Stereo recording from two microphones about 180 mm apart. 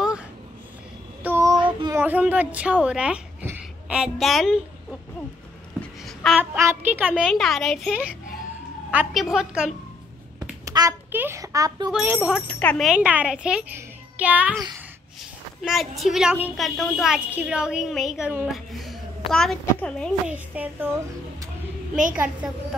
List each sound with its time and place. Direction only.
1.2 s child singing: 15° right (ahead or behind)
2.0 s speech: 10° right (ahead or behind)
5.8 s babbling: centre (ahead or behind)
6.5 s a child's voice: 10° right (ahead or behind)
10.6 s a sound: 20° right (ahead or behind)
11.1 s a child's voice: 10° right (ahead or behind)
11.9 s a child's voice: 5° right (ahead or behind)
12.4 s a child's voice: 10° left (ahead or behind); by 14.5 s 10° right (ahead or behind)
15.6 s a child's voice: centre (ahead or behind)
18.7 s a sound: centre (ahead or behind)
19.3 s a child's voice: 5° left (ahead or behind)
20.2 s a child's voice: 10° right (ahead or behind)
22.1 s a child's voice: 5° right (ahead or behind)